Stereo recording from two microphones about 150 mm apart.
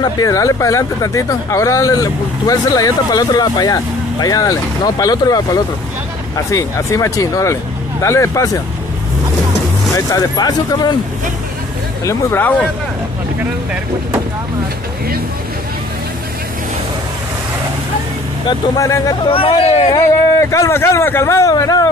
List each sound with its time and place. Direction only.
0.0 s speech: 25° left (ahead or behind)
9.9 s speech: 20° left (ahead or behind)
12.0 s speech: 20° left (ahead or behind)
18.5 s speech: 20° left (ahead or behind)
19.2 s speech: 35° left (ahead or behind)
19.9 s speech: 20° left (ahead or behind)